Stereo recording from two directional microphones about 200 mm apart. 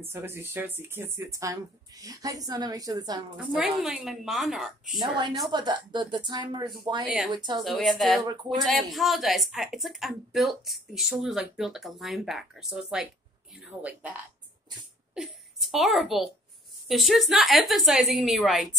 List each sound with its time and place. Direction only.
0.0 s speech: 10° right (ahead or behind)
3.3 s speech: 5° right (ahead or behind)
4.9 s speech: 20° right (ahead or behind)
7.6 s speech: centre (ahead or behind)
15.1 s a woman's voice: centre (ahead or behind)